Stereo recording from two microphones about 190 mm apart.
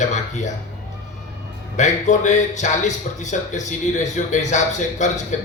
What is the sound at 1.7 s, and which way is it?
A man's voice, 40° left (ahead or behind).